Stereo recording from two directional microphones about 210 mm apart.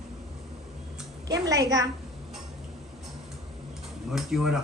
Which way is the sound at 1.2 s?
15° right (ahead or behind).